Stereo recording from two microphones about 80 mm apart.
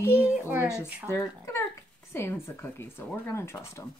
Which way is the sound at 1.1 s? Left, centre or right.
Left.